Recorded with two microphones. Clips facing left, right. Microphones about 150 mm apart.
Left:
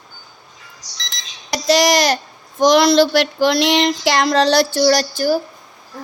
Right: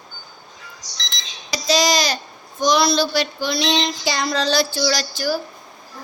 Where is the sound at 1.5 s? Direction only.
65° left (ahead or behind).